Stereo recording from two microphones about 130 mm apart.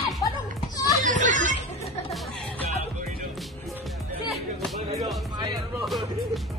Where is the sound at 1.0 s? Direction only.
75° right (ahead or behind).